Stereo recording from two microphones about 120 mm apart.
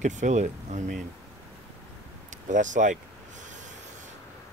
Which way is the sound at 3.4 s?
90° right.